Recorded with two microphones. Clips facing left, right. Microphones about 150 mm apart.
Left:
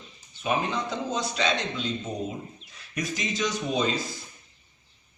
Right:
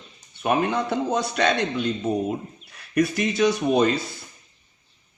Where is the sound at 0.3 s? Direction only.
60° right (ahead or behind).